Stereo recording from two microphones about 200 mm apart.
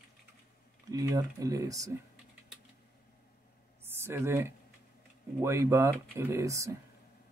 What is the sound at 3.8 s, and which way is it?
A man's voice, 10° right (ahead or behind).